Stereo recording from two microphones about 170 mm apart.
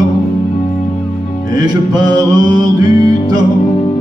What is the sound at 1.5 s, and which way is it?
Mantra, 25° right (ahead or behind).